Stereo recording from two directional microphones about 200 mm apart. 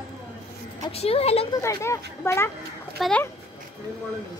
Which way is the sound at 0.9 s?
30° left (ahead or behind).